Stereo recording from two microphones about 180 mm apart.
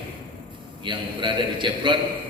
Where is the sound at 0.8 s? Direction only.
25° right (ahead or behind).